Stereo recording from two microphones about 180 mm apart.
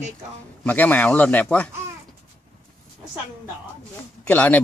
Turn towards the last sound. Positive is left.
turn(degrees=10)  # may be behind; listen again after turning